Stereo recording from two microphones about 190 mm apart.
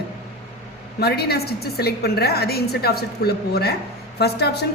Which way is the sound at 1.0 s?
55° left (ahead or behind).